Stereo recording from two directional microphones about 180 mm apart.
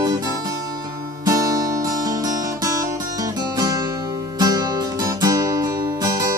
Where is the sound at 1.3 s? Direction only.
20° right (ahead or behind).